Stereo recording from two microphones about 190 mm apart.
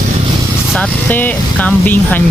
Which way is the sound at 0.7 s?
10° left (ahead or behind).